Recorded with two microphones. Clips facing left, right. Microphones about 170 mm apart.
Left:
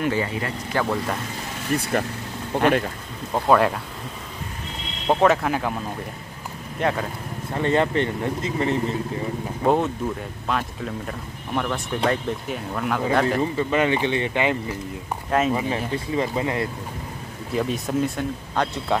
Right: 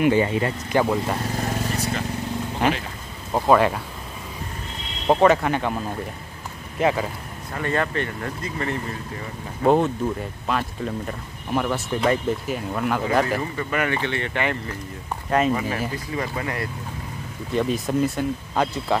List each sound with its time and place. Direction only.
0.0 s speech: 20° right (ahead or behind)
1.8 s speech: 55° left (ahead or behind)
3.3 s speech: centre (ahead or behind)
5.0 s speech: centre (ahead or behind)
6.8 s speech: 5° right (ahead or behind)
7.5 s speech: 25° left (ahead or behind)
9.6 s speech: centre (ahead or behind)
13.4 s speech: 20° left (ahead or behind)
15.2 s speech: centre (ahead or behind)
15.9 s speech: 25° left (ahead or behind)
17.5 s speech: centre (ahead or behind)